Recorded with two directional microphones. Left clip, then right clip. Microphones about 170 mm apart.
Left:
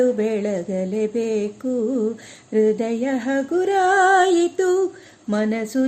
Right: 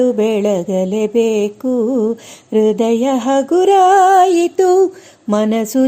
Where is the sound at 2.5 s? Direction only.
40° right (ahead or behind).